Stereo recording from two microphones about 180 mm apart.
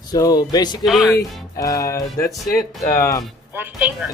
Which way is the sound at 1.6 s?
20° left (ahead or behind).